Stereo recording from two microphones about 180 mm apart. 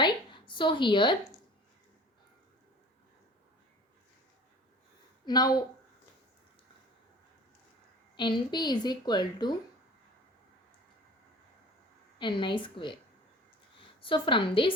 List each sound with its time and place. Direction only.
0.0 s a sound: 25° left (ahead or behind)
5.2 s a woman's voice: 20° left (ahead or behind)
8.1 s a woman's voice: 25° left (ahead or behind)
12.2 s a woman's voice: 25° left (ahead or behind)
14.0 s a woman's voice: 30° left (ahead or behind)